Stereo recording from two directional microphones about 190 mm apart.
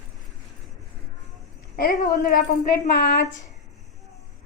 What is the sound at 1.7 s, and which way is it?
A woman's voice, 50° left (ahead or behind).